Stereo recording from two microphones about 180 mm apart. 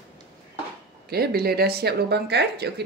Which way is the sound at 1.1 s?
60° right (ahead or behind).